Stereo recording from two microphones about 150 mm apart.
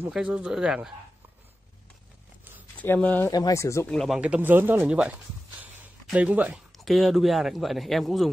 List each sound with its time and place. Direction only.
0.0 s speech: 10° right (ahead or behind)
2.7 s speech: 10° left (ahead or behind)
3.3 s speech: 25° left (ahead or behind)
3.8 s speech: 5° left (ahead or behind)
4.2 s speech: 10° right (ahead or behind)
5.6 s a sound: 10° right (ahead or behind)
6.8 s speech: centre (ahead or behind)